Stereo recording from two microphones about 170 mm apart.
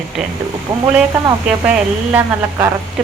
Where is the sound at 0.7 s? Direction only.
30° right (ahead or behind).